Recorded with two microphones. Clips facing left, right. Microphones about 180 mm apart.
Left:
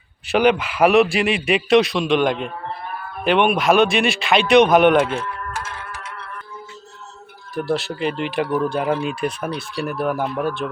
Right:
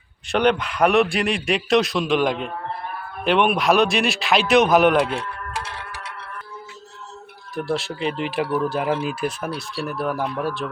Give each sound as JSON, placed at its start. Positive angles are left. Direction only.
{"t": 0.3, "sound": "speech", "side_deg": 5}
{"t": 5.5, "sound": "music", "side_deg": -35}
{"t": 7.5, "sound": "speech", "side_deg": 0}